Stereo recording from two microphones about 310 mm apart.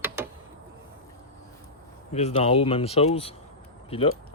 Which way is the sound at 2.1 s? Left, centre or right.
Centre.